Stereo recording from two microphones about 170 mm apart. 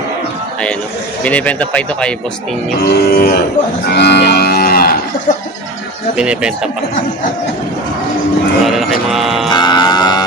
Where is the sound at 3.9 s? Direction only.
75° left (ahead or behind).